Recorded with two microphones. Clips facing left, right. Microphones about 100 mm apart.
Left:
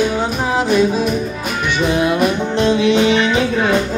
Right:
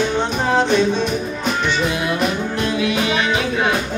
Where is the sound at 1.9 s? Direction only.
20° left (ahead or behind).